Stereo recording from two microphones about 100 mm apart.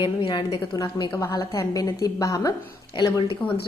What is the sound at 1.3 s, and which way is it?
A woman's voice, 35° left (ahead or behind).